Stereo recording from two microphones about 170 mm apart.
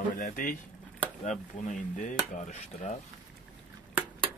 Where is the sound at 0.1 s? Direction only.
50° left (ahead or behind).